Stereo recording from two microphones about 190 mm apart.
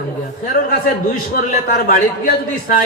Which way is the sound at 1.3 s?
50° left (ahead or behind).